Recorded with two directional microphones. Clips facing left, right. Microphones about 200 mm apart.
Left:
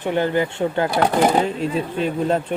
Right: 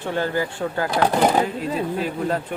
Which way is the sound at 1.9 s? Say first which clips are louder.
Left 3 dB; 25° left (ahead or behind).